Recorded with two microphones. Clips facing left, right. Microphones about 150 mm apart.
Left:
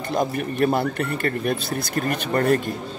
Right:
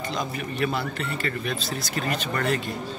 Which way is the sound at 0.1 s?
55° left (ahead or behind).